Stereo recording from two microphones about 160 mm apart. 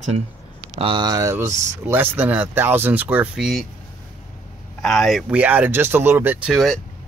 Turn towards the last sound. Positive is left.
turn(degrees=0)  # may be behind; listen again after turning